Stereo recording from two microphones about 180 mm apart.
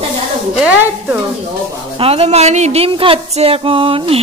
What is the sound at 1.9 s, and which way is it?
Speech, 35° right (ahead or behind).